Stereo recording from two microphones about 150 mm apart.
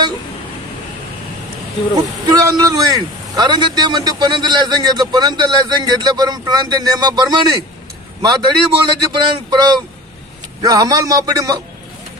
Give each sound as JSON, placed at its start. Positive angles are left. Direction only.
{"t": 2.0, "sound": "a man's voice", "side_deg": -25}